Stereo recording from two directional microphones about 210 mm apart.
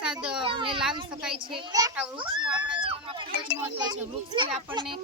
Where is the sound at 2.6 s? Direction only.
25° right (ahead or behind).